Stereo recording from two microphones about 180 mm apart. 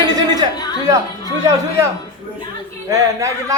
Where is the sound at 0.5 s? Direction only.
20° left (ahead or behind).